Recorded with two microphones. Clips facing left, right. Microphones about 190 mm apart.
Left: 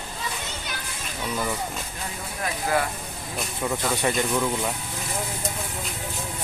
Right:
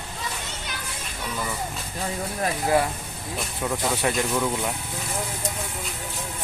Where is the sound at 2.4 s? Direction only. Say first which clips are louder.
Right 3 dB; 25° right (ahead or behind).